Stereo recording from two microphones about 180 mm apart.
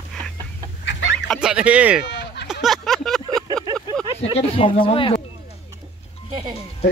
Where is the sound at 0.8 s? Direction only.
80° left.